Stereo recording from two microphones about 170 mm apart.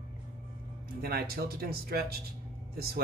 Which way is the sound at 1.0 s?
65° right (ahead or behind).